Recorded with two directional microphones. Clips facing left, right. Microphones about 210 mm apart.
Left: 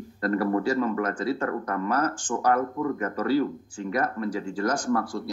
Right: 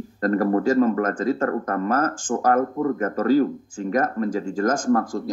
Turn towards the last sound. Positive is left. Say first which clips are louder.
# right 5 dB
turn(degrees=-45)  # may be behind; listen again after turning